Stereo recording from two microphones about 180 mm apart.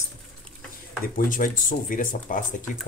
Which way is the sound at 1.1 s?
50° left (ahead or behind).